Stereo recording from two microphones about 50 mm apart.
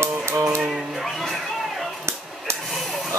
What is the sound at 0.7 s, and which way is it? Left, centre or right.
Music, centre.